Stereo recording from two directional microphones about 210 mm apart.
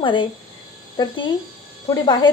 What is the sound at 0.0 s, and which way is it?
Speech, 25° left (ahead or behind).